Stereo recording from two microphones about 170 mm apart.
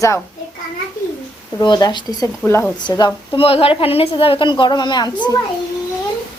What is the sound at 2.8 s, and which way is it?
A woman's voice, 25° left (ahead or behind).